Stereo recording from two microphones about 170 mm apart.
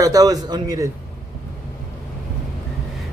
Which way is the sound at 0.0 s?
20° right (ahead or behind).